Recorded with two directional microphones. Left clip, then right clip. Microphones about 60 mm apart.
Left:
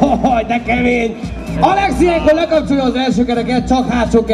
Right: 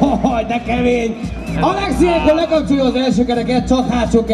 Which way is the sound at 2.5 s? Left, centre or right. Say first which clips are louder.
Left 1 dB; left.